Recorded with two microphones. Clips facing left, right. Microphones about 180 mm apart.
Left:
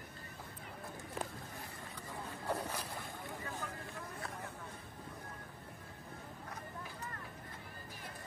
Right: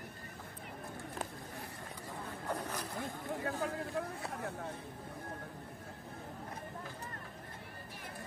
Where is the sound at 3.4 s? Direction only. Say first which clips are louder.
Right 8 dB; 65° right (ahead or behind).